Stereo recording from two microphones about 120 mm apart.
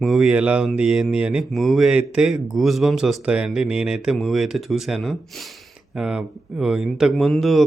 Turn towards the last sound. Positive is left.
turn(degrees=0)  # may be behind; listen again after turning